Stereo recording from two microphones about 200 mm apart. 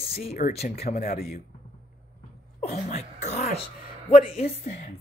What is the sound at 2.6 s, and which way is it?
Speech, 35° left (ahead or behind).